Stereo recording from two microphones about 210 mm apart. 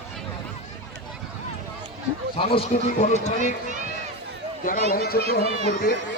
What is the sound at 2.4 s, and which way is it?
A man's voice, 25° left (ahead or behind).